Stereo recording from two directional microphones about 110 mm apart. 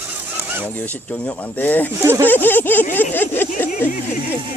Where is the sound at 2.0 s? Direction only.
20° right (ahead or behind).